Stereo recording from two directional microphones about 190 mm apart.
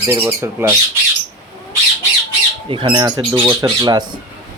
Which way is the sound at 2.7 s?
25° right (ahead or behind).